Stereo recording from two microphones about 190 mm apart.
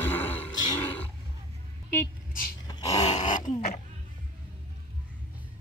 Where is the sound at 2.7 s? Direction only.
20° left (ahead or behind).